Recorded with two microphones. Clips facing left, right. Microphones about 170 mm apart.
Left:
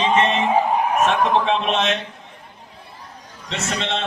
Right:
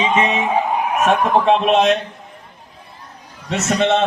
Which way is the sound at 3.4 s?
50° right (ahead or behind).